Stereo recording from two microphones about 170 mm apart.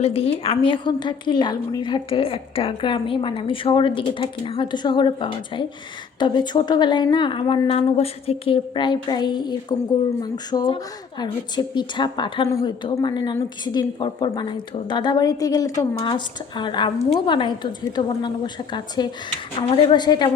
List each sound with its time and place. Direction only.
0.0 s a woman's voice: 35° left (ahead or behind)